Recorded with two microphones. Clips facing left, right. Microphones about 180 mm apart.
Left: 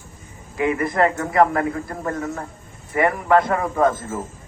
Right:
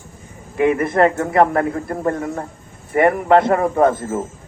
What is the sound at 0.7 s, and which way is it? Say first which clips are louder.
A man's voice: right 3 dB; 25° right (ahead or behind).